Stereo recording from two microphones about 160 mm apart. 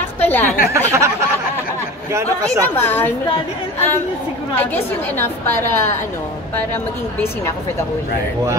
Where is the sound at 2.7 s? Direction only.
15° left (ahead or behind).